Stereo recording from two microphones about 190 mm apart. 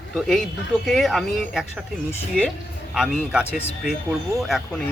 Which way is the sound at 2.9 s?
5° right (ahead or behind).